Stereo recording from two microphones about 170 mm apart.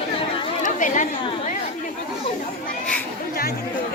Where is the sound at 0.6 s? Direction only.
50° left (ahead or behind).